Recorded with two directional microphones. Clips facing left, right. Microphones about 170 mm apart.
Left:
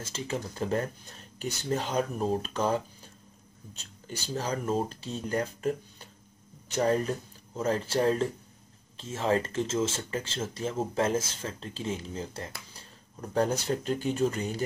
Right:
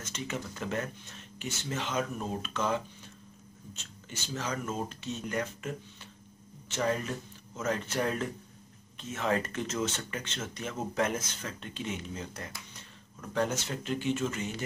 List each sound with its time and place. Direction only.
0.0 s speech: 30° left (ahead or behind)